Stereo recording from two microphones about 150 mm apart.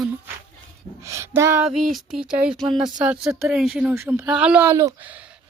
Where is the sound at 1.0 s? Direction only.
20° right (ahead or behind).